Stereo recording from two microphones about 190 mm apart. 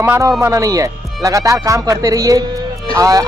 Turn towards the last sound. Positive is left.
turn(degrees=-20)  # may be behind; listen again after turning